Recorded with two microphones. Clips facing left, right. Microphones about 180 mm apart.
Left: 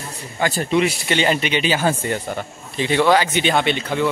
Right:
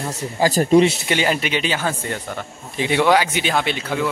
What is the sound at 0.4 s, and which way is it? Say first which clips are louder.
Speech: right 5 dB; 40° right (ahead or behind).